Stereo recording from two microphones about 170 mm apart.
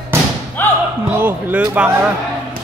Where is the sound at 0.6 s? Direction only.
10° left (ahead or behind).